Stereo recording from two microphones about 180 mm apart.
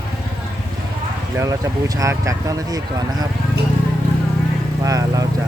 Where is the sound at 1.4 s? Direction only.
20° right (ahead or behind).